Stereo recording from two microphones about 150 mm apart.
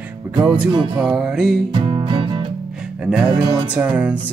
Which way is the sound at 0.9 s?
5° right (ahead or behind).